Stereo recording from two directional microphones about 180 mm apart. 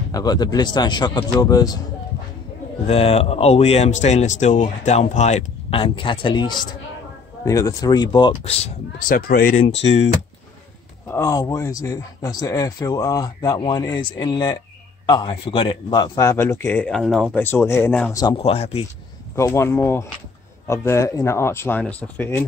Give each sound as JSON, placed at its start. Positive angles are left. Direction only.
{"t": 0.1, "sound": "speech", "side_deg": 20}
{"t": 2.9, "sound": "speech", "side_deg": 35}
{"t": 11.1, "sound": "a man's voice", "side_deg": 15}
{"t": 18.2, "sound": "speech", "side_deg": 30}
{"t": 19.3, "sound": "a man's voice", "side_deg": 15}